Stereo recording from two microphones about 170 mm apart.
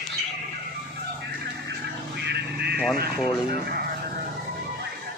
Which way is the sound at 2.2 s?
75° right (ahead or behind).